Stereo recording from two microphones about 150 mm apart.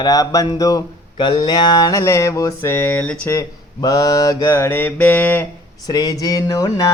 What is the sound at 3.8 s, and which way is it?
Mantra, 25° left (ahead or behind).